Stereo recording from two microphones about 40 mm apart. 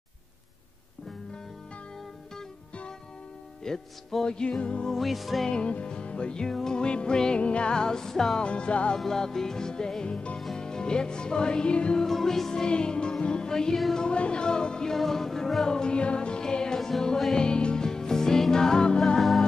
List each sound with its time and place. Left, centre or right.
3.6 s music: centre
5.0 s music: centre
5.5 s music: left
8.4 s music: left
8.9 s music: centre
12.0 s music: centre
15.0 s music: centre
15.7 s music: left
19.1 s music: centre